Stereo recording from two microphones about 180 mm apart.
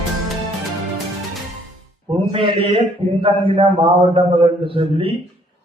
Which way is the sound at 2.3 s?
30° right (ahead or behind).